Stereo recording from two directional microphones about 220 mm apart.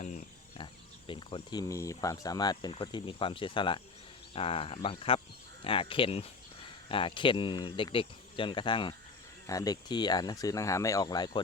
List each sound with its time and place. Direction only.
0.0 s speech: 30° left (ahead or behind)